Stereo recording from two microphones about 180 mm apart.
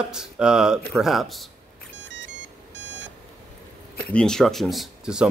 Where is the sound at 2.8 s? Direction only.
80° right.